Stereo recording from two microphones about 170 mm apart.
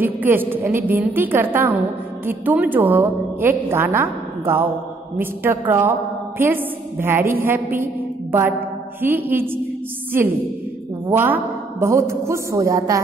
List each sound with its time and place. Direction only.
0.0 s a woman's voice: 10° right (ahead or behind)